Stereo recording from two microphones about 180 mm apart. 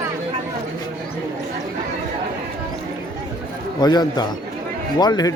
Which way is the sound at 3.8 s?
25° left (ahead or behind).